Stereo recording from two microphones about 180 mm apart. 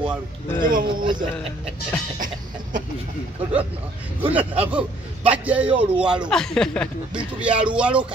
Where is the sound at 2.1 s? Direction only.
50° right (ahead or behind).